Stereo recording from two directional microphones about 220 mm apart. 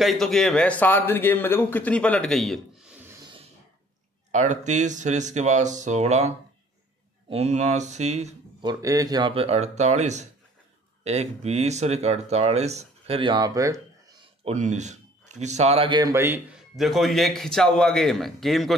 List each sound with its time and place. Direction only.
0.0 s speech: centre (ahead or behind)
4.3 s speech: 35° right (ahead or behind)
8.6 s speech: 15° right (ahead or behind)
14.4 s speech: 30° right (ahead or behind); by 18.8 s centre (ahead or behind)